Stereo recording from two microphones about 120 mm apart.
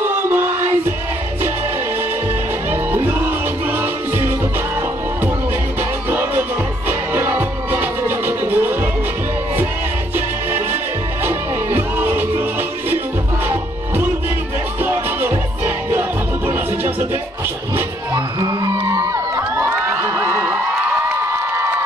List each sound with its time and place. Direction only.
0.0 s music: 20° right (ahead or behind)
2.7 s music: 15° right (ahead or behind)
5.8 s music: 15° right (ahead or behind)
10.1 s music: 15° right (ahead or behind)
18.1 s crowd: 35° right (ahead or behind); by 20.1 s 15° right (ahead or behind)
20.2 s a sound: 20° right (ahead or behind)